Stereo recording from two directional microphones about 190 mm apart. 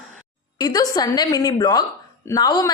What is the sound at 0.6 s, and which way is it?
A woman's voice, 20° left (ahead or behind).